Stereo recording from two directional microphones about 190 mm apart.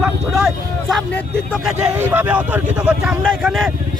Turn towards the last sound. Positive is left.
turn(degrees=0)  # may be behind; listen again after turning